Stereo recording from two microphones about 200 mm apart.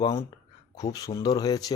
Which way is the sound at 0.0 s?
15° left (ahead or behind).